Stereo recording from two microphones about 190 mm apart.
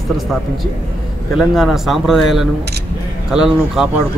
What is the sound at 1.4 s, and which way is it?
A man's voice, centre (ahead or behind).